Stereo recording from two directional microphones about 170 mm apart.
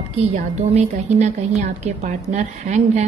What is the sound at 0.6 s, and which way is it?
A woman's voice, 40° right (ahead or behind).